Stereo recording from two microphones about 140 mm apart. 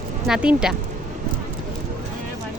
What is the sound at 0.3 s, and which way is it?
Speech, 5° right (ahead or behind).